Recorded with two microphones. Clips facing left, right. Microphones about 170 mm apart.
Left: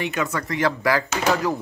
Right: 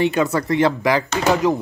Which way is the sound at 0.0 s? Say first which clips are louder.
Right 7 dB; 35° right (ahead or behind).